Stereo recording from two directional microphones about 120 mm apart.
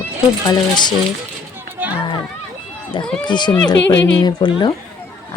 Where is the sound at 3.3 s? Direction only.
40° left (ahead or behind).